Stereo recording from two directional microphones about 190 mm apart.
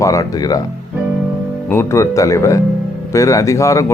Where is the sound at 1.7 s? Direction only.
15° left (ahead or behind).